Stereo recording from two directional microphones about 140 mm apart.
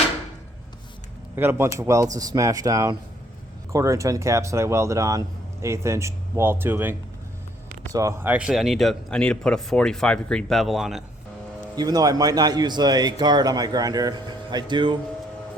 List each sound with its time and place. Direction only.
1.4 s a man's voice: 15° right (ahead or behind)
7.9 s a man's voice: 20° right (ahead or behind)
8.3 s speech: 5° right (ahead or behind)
11.8 s a man's voice: 30° right (ahead or behind)